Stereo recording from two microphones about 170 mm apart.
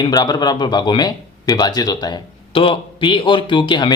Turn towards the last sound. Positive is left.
turn(degrees=25)  # may be behind; listen again after turning